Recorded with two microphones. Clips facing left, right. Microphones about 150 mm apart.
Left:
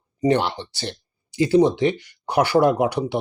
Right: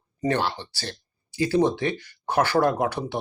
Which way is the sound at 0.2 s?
15° left (ahead or behind).